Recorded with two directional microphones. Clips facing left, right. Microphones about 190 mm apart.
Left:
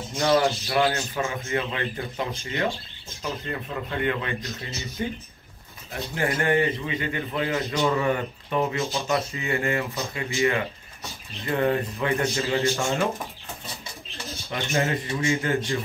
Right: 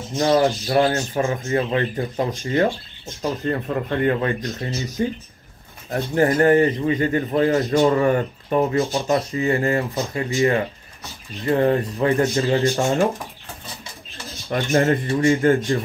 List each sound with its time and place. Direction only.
0.2 s a man's voice: 30° right (ahead or behind)
14.5 s speech: 50° right (ahead or behind)